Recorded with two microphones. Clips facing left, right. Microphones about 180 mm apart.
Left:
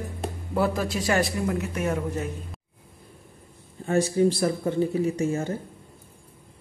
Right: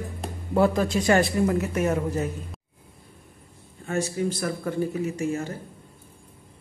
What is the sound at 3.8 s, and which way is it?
Speech, 35° left (ahead or behind).